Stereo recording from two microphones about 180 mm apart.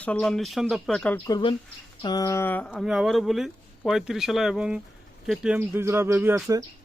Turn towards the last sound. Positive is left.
turn(degrees=-15)  # may be behind; listen again after turning